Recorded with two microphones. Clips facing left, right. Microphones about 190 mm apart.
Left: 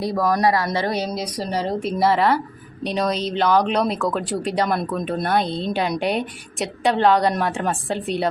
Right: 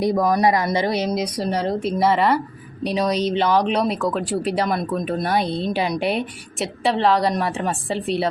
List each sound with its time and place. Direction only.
0.0 s speech: 20° right (ahead or behind)
1.5 s a woman's voice: centre (ahead or behind)